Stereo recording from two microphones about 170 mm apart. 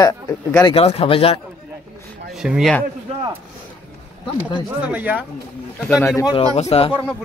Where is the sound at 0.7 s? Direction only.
35° left (ahead or behind).